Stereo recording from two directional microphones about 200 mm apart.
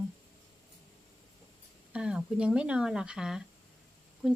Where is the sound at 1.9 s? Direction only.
5° right (ahead or behind).